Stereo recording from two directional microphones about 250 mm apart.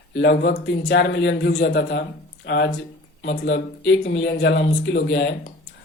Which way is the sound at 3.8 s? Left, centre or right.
Left.